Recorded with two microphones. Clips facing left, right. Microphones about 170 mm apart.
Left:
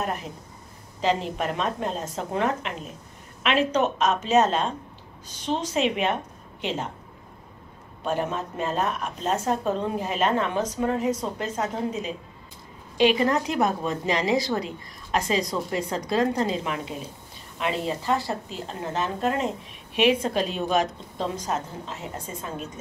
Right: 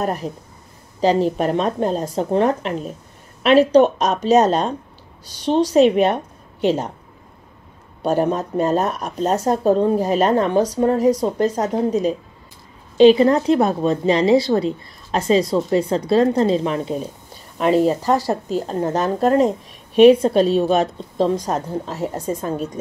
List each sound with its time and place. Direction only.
0.0 s speech: 35° right (ahead or behind)
8.0 s speech: 40° right (ahead or behind)